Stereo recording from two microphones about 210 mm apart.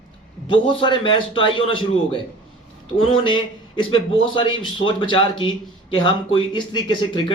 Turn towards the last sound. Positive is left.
turn(degrees=20)  # may be behind; listen again after turning